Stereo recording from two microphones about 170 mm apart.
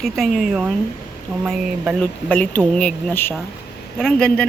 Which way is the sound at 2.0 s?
10° left (ahead or behind).